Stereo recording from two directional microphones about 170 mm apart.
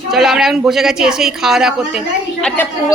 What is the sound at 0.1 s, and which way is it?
Speech, centre (ahead or behind).